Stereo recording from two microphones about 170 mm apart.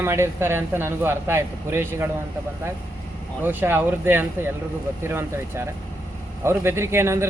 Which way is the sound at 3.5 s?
10° right (ahead or behind).